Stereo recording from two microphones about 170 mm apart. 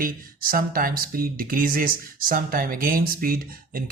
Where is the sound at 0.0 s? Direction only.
60° right (ahead or behind).